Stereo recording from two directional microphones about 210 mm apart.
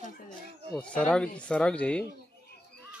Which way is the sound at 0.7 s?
5° left (ahead or behind).